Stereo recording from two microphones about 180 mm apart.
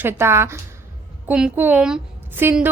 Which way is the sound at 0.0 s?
15° right (ahead or behind).